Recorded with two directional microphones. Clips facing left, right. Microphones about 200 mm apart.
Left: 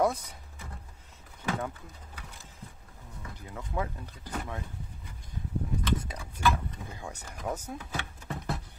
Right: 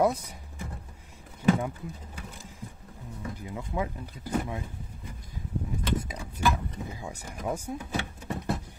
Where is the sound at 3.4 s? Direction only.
15° right (ahead or behind).